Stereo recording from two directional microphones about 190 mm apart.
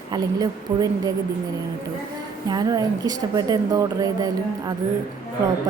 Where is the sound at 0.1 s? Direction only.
20° right (ahead or behind).